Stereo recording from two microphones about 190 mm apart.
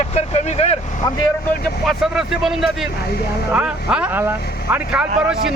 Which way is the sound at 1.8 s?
Centre (ahead or behind).